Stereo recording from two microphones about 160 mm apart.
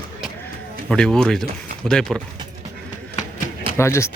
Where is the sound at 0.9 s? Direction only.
5° left (ahead or behind).